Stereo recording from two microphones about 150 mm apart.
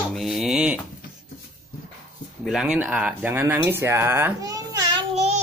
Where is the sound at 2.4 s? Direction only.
5° right (ahead or behind); by 5.0 s 25° right (ahead or behind).